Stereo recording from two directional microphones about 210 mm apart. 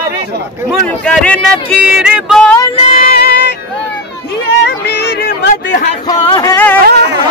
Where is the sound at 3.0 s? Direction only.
50° left (ahead or behind).